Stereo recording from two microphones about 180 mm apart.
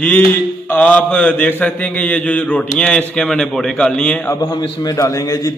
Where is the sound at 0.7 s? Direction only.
10° left (ahead or behind).